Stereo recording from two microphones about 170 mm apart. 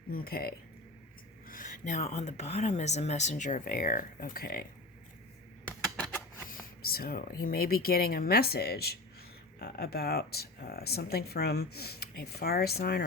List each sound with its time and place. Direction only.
0.1 s speech: 60° left (ahead or behind)
6.5 s speech: 60° left (ahead or behind)